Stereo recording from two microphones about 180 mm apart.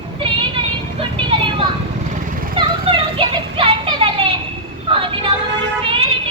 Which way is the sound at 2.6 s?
30° right (ahead or behind).